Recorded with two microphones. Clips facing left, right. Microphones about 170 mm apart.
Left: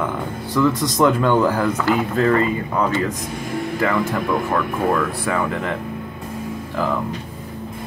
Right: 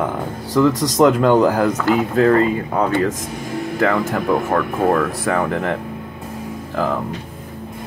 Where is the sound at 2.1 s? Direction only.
60° right (ahead or behind).